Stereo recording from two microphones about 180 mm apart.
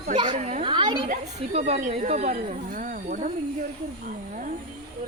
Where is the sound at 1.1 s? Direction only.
35° right (ahead or behind).